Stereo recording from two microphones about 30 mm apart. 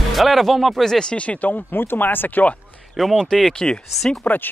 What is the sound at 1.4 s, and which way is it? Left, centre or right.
Speech, left.